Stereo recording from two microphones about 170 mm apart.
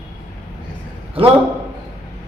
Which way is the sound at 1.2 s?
30° right (ahead or behind).